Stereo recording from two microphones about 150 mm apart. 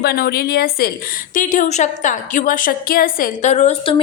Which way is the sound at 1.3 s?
60° left (ahead or behind).